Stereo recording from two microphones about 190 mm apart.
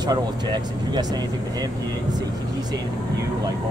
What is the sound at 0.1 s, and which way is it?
Speech, 20° right (ahead or behind).